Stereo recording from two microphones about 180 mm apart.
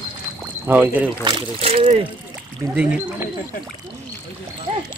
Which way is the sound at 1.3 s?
30° right (ahead or behind).